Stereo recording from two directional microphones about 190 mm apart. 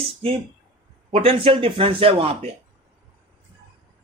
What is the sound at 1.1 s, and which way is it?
Speech, 30° right (ahead or behind).